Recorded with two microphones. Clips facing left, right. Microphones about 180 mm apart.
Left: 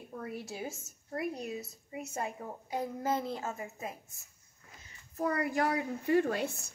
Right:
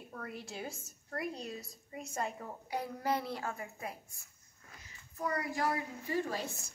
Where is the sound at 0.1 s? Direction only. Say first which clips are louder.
Left 4 dB; 10° left (ahead or behind).